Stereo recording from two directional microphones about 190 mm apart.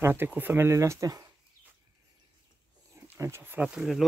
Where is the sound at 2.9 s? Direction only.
15° right (ahead or behind).